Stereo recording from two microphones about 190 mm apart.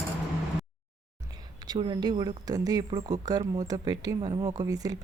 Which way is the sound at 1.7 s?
20° right (ahead or behind).